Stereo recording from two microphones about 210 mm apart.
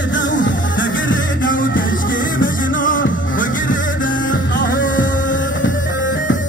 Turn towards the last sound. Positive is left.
turn(degrees=40)  # may be behind; listen again after turning